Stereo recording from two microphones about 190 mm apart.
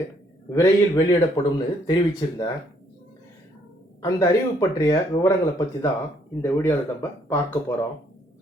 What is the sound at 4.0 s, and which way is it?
Speech, 15° left (ahead or behind).